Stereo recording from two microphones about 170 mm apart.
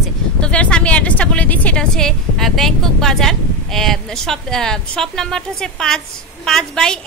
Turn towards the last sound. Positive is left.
turn(degrees=5)  # may be behind; listen again after turning